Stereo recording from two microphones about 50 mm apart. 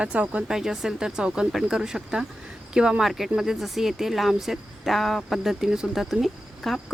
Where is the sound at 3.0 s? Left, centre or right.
Centre.